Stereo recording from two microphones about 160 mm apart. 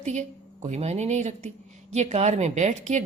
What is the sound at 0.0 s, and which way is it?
Speech, 45° right (ahead or behind).